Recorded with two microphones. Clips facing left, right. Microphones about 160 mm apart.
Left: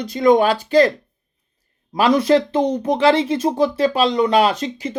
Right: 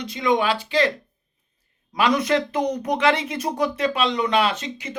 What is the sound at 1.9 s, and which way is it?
Speech, 35° left (ahead or behind).